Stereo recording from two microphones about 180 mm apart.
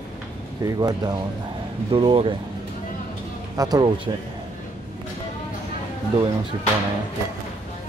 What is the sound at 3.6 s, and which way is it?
Speech, 20° right (ahead or behind).